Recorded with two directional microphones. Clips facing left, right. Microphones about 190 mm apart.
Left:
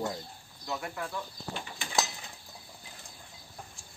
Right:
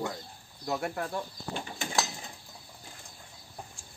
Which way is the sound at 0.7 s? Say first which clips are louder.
Right 4 dB; 45° right (ahead or behind).